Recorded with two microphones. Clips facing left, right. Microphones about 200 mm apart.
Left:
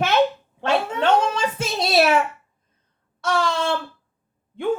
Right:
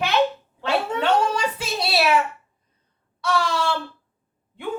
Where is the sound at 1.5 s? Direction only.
45° left (ahead or behind).